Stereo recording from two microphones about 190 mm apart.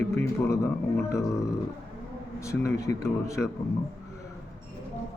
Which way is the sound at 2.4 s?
15° left (ahead or behind).